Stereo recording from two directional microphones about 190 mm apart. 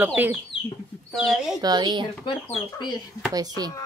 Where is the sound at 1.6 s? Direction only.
20° right (ahead or behind).